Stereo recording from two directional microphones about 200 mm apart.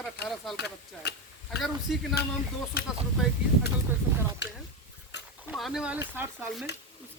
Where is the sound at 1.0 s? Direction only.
55° left (ahead or behind).